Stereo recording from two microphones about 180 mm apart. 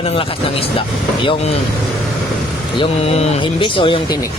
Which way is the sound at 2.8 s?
35° left (ahead or behind).